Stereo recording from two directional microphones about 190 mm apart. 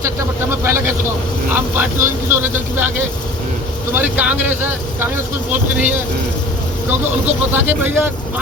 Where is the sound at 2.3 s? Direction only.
10° right (ahead or behind).